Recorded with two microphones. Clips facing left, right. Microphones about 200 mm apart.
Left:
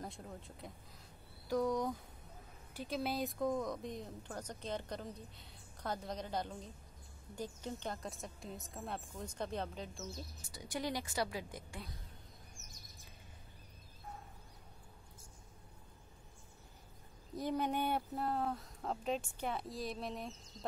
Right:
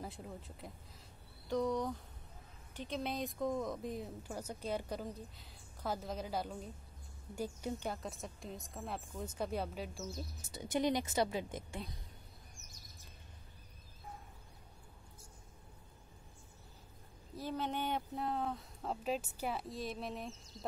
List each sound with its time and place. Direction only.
0.0 s speech: 5° right (ahead or behind)
10.5 s a woman's voice: 25° right (ahead or behind)
17.4 s speech: 15° left (ahead or behind); by 20.3 s centre (ahead or behind)